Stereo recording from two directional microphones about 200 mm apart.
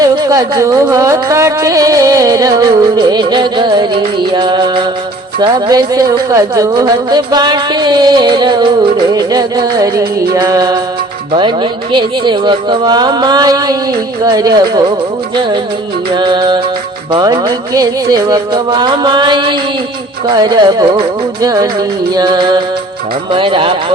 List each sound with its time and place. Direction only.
0.0 s music: 20° right (ahead or behind)
16.1 s music: 25° right (ahead or behind)